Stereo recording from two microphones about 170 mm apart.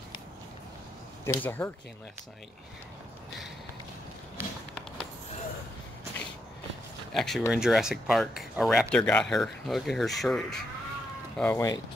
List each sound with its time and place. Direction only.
1.2 s speech: 15° left (ahead or behind)
4.4 s run: 15° right (ahead or behind)
7.2 s speech: centre (ahead or behind)
11.3 s speech: 15° left (ahead or behind)